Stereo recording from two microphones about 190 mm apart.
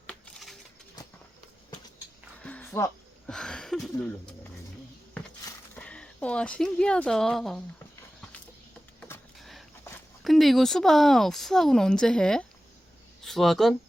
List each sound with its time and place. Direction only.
0.1 s bird: centre (ahead or behind)
1.0 s bird: 20° left (ahead or behind)
2.4 s music: 5° left (ahead or behind)
5.5 s speech: 10° left (ahead or behind)
9.0 s a sound: 10° left (ahead or behind)
9.4 s a sound: centre (ahead or behind)
10.2 s speech: centre (ahead or behind)